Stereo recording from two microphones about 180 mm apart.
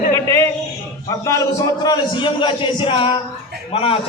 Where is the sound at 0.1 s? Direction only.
15° left (ahead or behind).